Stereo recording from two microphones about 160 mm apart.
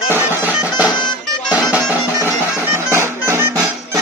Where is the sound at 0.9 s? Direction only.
25° left (ahead or behind).